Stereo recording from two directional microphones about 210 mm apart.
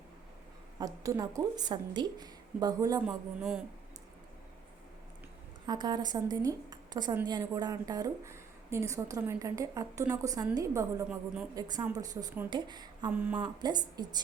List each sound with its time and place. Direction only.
0.8 s a woman's voice: 15° right (ahead or behind)
3.1 s speech: 5° right (ahead or behind)
5.6 s a woman's voice: 20° right (ahead or behind)
13.1 s a woman's voice: 10° right (ahead or behind)
13.6 s a woman's voice: 20° right (ahead or behind)